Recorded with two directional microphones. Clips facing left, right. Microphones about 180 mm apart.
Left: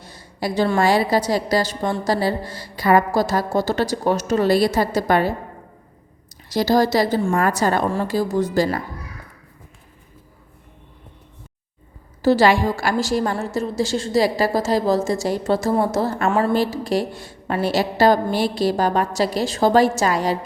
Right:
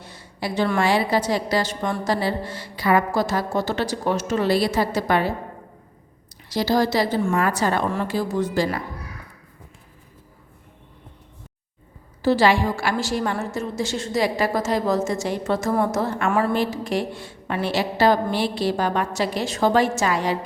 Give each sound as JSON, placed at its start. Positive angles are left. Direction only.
{"t": 0.0, "sound": "a woman's voice", "side_deg": 40}
{"t": 6.5, "sound": "a woman's voice", "side_deg": 45}
{"t": 12.2, "sound": "a woman's voice", "side_deg": 40}